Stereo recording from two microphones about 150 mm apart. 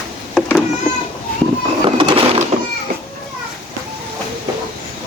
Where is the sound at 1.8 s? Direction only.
30° right (ahead or behind).